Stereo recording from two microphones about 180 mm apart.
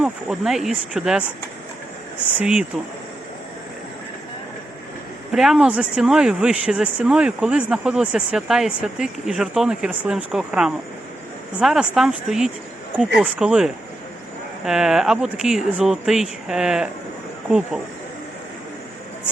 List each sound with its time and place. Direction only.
0.0 s speech: 5° right (ahead or behind)
2.4 s speech: 5° right (ahead or behind)
5.3 s speech: centre (ahead or behind)